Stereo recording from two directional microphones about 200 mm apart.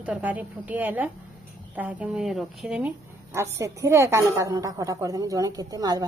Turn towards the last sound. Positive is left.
turn(degrees=-20)  # may be behind; listen again after turning